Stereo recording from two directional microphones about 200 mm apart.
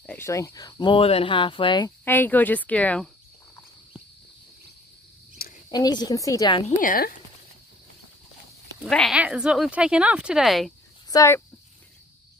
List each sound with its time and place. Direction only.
0.0 s speech: 10° left (ahead or behind)
2.0 s speech: 10° left (ahead or behind)
5.7 s speech: 20° left (ahead or behind)
6.8 s speech: 45° left (ahead or behind)
8.8 s speech: centre (ahead or behind)
11.1 s speech: 15° left (ahead or behind)